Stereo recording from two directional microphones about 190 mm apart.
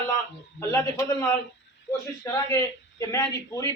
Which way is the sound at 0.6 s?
15° left (ahead or behind).